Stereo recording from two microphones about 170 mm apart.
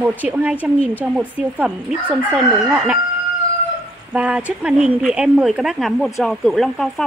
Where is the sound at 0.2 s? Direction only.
10° right (ahead or behind).